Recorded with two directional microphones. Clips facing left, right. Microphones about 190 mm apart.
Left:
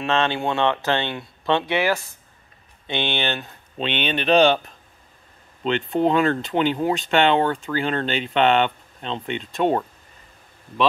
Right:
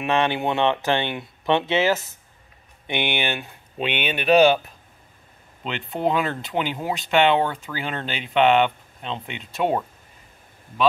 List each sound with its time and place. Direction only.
0.0 s speech: 15° right (ahead or behind)